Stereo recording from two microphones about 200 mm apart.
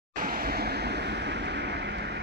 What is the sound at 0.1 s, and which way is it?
Vehicle, 45° right (ahead or behind).